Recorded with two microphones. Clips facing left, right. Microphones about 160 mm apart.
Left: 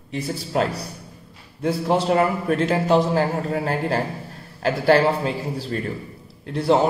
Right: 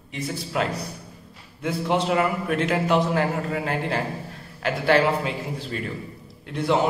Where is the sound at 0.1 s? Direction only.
35° left (ahead or behind).